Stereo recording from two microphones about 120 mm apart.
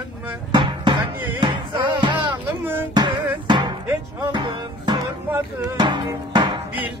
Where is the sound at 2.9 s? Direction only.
40° right (ahead or behind).